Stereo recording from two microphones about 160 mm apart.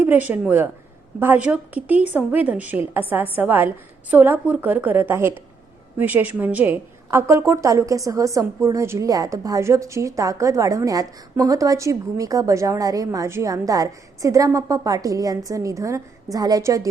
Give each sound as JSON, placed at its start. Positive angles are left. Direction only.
{"t": 0.0, "sound": "a woman's voice", "side_deg": -10}